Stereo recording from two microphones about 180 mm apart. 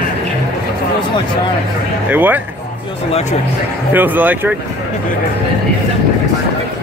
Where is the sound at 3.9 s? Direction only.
10° right (ahead or behind).